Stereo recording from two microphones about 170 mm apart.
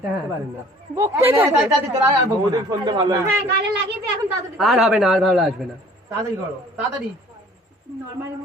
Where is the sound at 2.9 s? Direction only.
25° right (ahead or behind).